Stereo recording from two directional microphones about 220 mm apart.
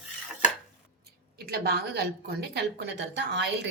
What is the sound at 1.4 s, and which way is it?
A woman's voice, 45° right (ahead or behind).